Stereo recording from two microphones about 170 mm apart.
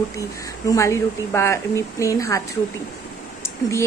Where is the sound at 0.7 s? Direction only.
15° left (ahead or behind).